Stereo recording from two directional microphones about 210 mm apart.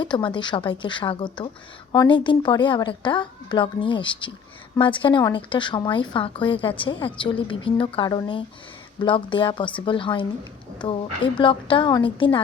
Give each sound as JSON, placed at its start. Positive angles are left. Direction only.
{"t": 0.0, "sound": "a woman's voice", "side_deg": 20}